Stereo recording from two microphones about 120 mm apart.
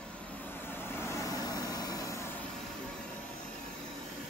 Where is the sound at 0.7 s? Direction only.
20° left (ahead or behind).